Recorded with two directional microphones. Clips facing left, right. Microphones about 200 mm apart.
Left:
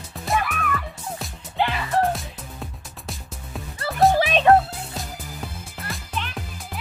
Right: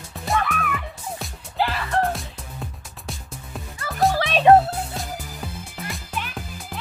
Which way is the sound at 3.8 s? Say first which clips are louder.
Left 4 dB; 30° left (ahead or behind).